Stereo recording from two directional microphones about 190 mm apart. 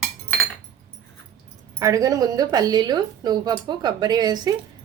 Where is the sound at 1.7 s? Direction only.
15° right (ahead or behind).